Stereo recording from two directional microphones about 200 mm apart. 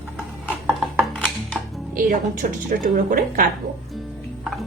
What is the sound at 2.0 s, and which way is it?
A woman's voice, 40° right (ahead or behind).